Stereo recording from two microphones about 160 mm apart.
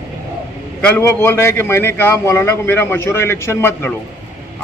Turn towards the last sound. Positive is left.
turn(degrees=15)  # may be behind; listen again after turning